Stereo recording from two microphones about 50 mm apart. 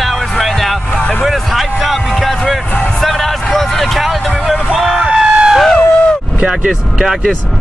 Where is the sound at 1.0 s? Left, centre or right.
Left.